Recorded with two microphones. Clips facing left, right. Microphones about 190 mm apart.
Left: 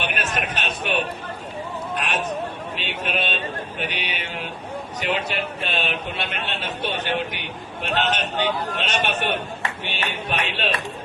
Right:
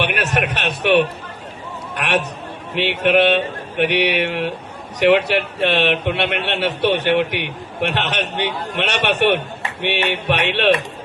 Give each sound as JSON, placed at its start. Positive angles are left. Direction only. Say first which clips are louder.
{"t": 0.0, "sound": "a man's voice", "louder": "right 6 dB", "side_deg": -70}